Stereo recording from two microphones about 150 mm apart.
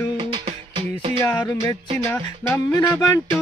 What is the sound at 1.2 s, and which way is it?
Speech, 15° left (ahead or behind).